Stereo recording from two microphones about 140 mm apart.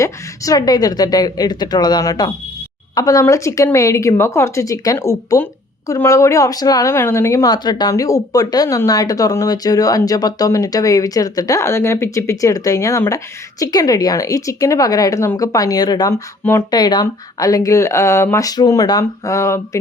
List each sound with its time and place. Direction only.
0.0 s speech: 25° left (ahead or behind)